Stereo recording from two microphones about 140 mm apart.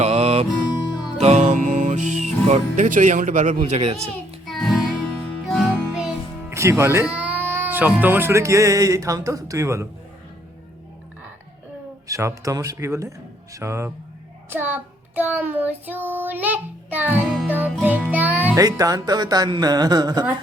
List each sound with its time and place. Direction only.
0.0 s music: 45° right (ahead or behind)
4.4 s music: centre (ahead or behind)
6.5 s speech: 20° right (ahead or behind)
12.0 s speech: 25° right (ahead or behind)
14.5 s child singing: 15° right (ahead or behind)
18.1 s music: 10° right (ahead or behind)
18.5 s speech: 25° right (ahead or behind)